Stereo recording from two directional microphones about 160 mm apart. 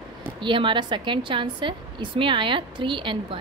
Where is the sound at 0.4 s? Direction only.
30° right (ahead or behind).